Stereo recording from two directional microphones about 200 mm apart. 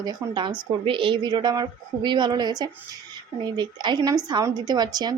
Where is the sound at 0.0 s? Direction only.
20° right (ahead or behind).